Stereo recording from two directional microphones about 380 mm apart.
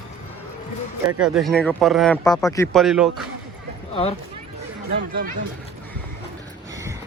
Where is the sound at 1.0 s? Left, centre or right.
Centre.